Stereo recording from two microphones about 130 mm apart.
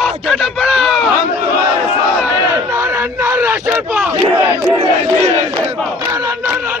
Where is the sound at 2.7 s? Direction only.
20° right (ahead or behind).